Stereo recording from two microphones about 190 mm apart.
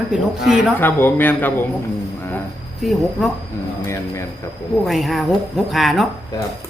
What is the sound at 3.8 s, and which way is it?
Speech, 15° left (ahead or behind).